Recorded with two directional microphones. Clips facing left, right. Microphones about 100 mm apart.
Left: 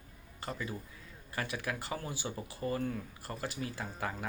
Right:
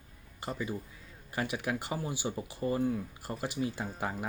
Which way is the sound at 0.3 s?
20° right (ahead or behind).